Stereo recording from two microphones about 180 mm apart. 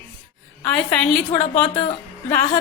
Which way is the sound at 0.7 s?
5° left (ahead or behind).